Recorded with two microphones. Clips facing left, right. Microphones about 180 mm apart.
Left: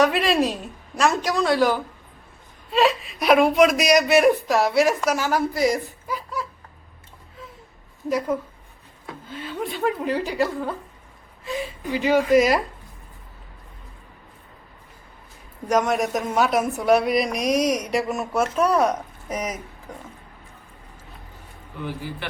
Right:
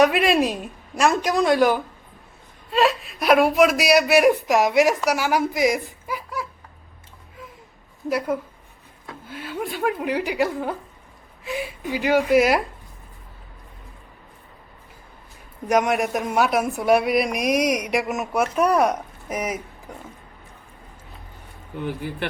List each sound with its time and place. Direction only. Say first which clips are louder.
0.0 s speech: right 2 dB; 10° right (ahead or behind)
2.6 s a man's voice: even; centre (ahead or behind)
9.3 s speech: even; 10° right (ahead or behind)
15.7 s speech: right 1 dB; 10° right (ahead or behind)